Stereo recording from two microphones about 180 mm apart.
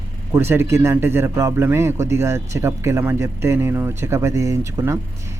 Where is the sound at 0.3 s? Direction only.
15° right (ahead or behind).